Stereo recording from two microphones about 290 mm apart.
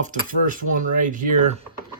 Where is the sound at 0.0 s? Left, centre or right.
Right.